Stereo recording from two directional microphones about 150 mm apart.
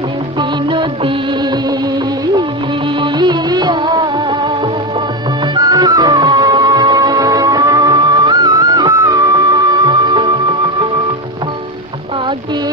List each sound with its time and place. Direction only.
0.4 s music: 35° right (ahead or behind)
3.0 s music of bollywood: 30° right (ahead or behind)
5.5 s music: 25° right (ahead or behind)